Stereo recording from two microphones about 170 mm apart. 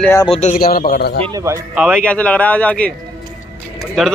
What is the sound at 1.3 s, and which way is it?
Speech, 20° right (ahead or behind).